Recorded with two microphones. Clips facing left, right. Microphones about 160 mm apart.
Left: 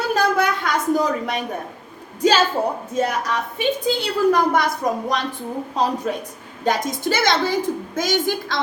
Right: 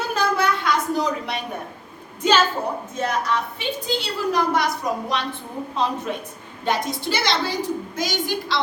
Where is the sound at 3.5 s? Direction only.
50° left (ahead or behind).